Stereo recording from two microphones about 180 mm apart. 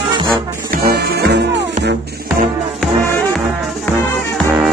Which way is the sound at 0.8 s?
65° right (ahead or behind).